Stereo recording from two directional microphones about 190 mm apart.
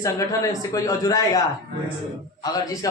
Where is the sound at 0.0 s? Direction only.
15° left (ahead or behind).